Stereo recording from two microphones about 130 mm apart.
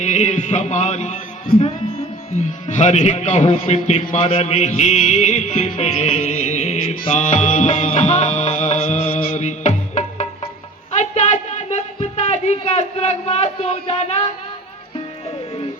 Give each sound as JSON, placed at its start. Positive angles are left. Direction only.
{"t": 0.0, "sound": "speech", "side_deg": 65}
{"t": 7.0, "sound": "music", "side_deg": 55}
{"t": 10.9, "sound": "a sound", "side_deg": 60}
{"t": 11.9, "sound": "speech", "side_deg": 60}